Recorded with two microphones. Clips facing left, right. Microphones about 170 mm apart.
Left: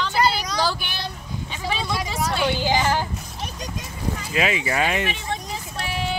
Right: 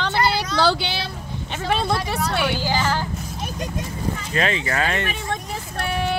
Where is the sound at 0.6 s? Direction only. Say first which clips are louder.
Right 6 dB; 85° right.